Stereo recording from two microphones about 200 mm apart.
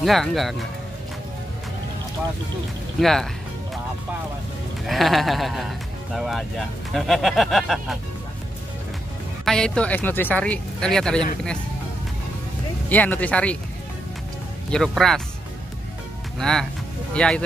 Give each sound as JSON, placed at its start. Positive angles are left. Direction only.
{"t": 0.0, "sound": "speech", "side_deg": 0}
{"t": 3.0, "sound": "speech", "side_deg": 0}
{"t": 4.8, "sound": "speech", "side_deg": 0}
{"t": 9.4, "sound": "speech", "side_deg": 5}
{"t": 12.9, "sound": "speech", "side_deg": 10}
{"t": 14.7, "sound": "speech", "side_deg": 0}
{"t": 16.3, "sound": "speech", "side_deg": 0}